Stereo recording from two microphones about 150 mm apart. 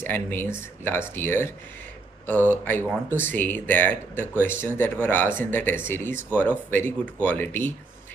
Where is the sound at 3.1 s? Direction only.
15° left (ahead or behind).